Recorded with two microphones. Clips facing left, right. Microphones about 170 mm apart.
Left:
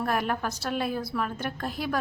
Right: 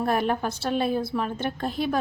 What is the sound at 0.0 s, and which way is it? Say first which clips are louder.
A woman's voice: right 4 dB; 30° right (ahead or behind).